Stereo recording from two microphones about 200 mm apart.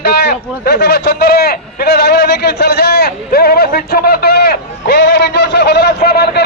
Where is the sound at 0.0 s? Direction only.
55° left (ahead or behind).